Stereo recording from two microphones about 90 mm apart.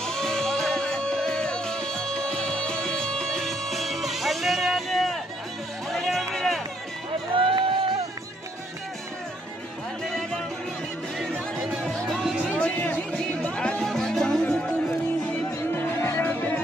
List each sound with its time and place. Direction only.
0.0 s music: 5° left (ahead or behind)
7.3 s a sound: 75° right (ahead or behind)
10.0 s music: 5° left (ahead or behind)
12.4 s music: 15° left (ahead or behind)
15.7 s music: 25° left (ahead or behind)